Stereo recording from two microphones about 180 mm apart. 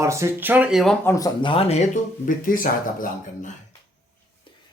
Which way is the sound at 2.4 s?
50° left (ahead or behind).